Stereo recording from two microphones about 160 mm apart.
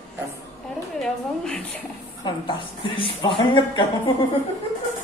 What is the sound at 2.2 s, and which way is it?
Speech, 30° left (ahead or behind).